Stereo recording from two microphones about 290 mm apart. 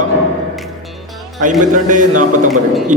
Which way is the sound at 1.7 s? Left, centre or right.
Right.